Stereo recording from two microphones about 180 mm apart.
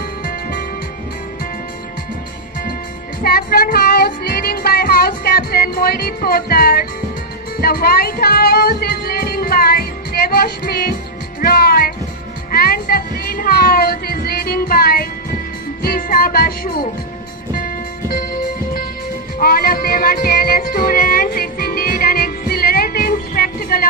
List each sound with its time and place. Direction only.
0.2 s music: 50° left (ahead or behind)
3.2 s music: 55° left (ahead or behind)